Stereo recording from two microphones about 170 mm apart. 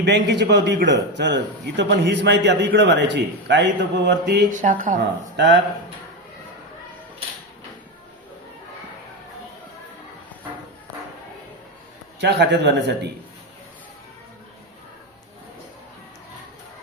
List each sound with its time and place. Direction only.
0.0 s a man's voice: 90° right
4.5 s speech: 50° right (ahead or behind)
5.4 s a man's voice: 90° right
12.2 s a man's voice: 85° right